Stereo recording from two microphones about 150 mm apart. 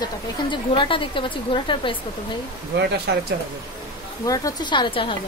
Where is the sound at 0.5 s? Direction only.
35° left (ahead or behind).